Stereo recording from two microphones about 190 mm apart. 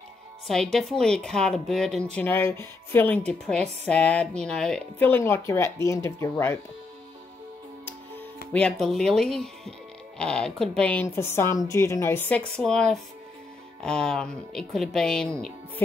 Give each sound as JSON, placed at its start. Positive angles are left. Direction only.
{"t": 0.5, "sound": "speech", "side_deg": 0}
{"t": 8.5, "sound": "speech", "side_deg": 5}